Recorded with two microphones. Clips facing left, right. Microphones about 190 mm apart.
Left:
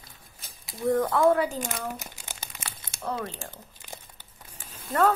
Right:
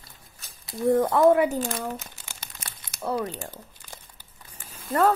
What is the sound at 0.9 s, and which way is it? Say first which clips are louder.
Speech: right 3 dB; 20° right (ahead or behind).